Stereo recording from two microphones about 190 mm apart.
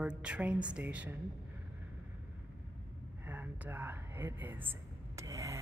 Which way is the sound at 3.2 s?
10° right (ahead or behind).